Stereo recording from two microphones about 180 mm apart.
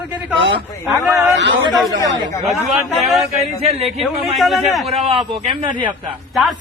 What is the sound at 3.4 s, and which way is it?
Speech, 35° right (ahead or behind).